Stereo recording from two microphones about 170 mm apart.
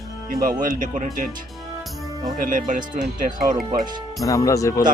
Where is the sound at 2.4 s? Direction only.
55° right (ahead or behind).